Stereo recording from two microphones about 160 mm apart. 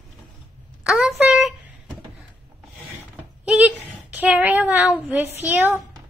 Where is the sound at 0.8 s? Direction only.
5° right (ahead or behind).